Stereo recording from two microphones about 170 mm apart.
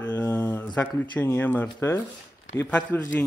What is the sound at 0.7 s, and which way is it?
Speech, 10° left (ahead or behind).